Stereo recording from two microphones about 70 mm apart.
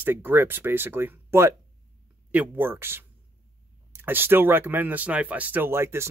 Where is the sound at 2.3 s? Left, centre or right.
Right.